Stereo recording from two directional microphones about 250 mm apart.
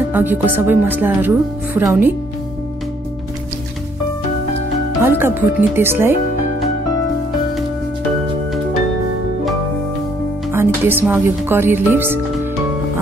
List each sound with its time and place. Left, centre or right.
0.1 s speech: centre
5.0 s speech: centre
10.5 s speech: centre